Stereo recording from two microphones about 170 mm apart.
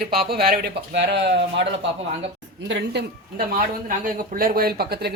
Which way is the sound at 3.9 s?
50° right (ahead or behind).